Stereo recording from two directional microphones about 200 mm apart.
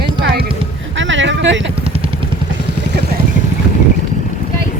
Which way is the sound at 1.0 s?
70° right (ahead or behind).